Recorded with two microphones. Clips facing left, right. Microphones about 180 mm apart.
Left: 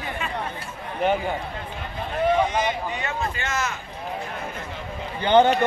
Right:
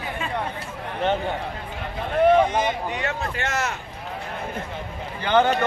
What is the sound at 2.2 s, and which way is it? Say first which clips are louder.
Speech: right 3 dB; 55° right (ahead or behind).